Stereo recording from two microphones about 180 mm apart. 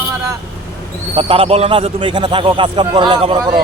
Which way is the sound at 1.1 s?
30° right (ahead or behind).